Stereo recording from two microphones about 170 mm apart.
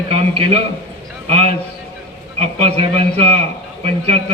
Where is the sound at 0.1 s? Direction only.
35° right (ahead or behind).